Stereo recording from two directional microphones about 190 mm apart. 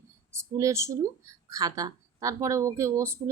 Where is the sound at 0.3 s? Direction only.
15° right (ahead or behind).